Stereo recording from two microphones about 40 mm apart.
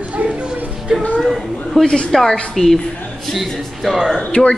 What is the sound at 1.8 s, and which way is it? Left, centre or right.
Speech, left.